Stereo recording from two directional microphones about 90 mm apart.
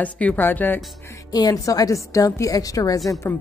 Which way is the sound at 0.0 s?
15° left (ahead or behind).